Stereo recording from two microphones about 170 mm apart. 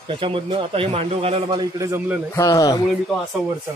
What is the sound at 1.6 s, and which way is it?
Speech, 20° right (ahead or behind).